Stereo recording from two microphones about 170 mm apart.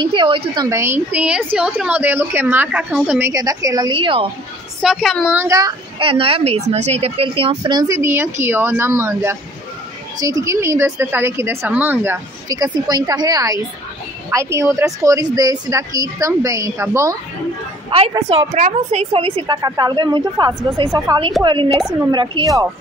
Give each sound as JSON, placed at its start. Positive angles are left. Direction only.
{"t": 0.0, "sound": "speech", "side_deg": -30}
{"t": 0.7, "sound": "a woman's voice", "side_deg": -15}
{"t": 4.8, "sound": "a woman's voice", "side_deg": 0}
{"t": 5.3, "sound": "a woman's voice", "side_deg": -15}
{"t": 17.8, "sound": "a woman's voice", "side_deg": -35}